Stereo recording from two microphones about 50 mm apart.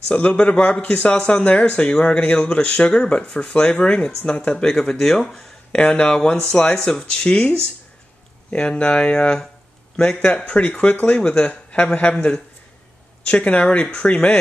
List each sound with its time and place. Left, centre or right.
0.1 s speech: left